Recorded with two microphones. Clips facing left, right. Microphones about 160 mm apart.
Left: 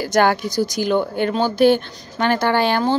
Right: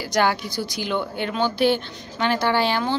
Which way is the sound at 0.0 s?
50° left (ahead or behind).